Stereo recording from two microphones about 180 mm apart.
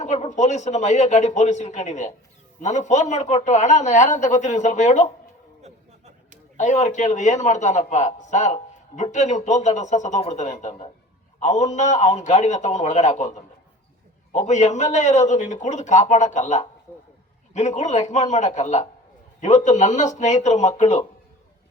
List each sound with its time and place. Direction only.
0.0 s a man's voice: 40° left (ahead or behind)
6.6 s a man's voice: 40° left (ahead or behind)